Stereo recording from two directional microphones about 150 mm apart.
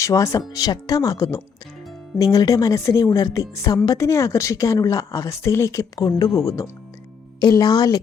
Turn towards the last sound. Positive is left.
turn(degrees=25)  # may be behind; listen again after turning